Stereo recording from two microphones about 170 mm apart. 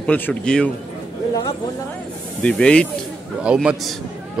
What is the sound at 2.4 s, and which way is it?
Speech, 5° left (ahead or behind).